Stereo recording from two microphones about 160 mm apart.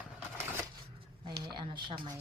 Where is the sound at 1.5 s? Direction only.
30° right (ahead or behind).